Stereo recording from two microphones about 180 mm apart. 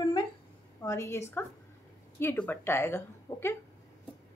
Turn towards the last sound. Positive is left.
turn(degrees=15)  # may be behind; listen again after turning